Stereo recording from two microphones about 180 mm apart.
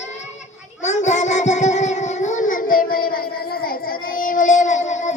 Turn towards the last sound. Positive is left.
turn(degrees=40)  # may be behind; listen again after turning